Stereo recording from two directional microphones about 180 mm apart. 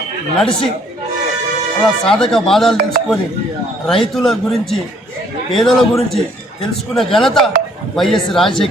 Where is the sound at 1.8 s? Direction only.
5° left (ahead or behind).